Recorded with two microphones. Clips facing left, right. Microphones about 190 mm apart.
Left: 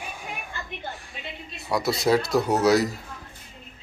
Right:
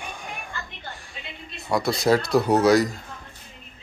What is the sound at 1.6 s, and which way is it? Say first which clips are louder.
Speech: right 2 dB; 5° left (ahead or behind).